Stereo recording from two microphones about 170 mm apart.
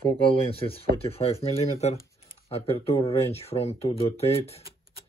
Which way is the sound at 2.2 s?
35° left (ahead or behind).